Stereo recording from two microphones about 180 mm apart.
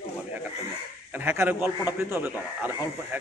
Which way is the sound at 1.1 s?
10° right (ahead or behind).